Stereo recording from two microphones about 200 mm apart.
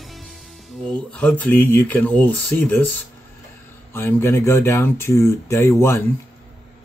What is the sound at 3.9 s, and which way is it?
Speech, 10° left (ahead or behind).